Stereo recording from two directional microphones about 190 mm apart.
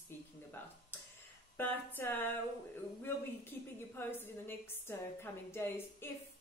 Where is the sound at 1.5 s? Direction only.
10° left (ahead or behind).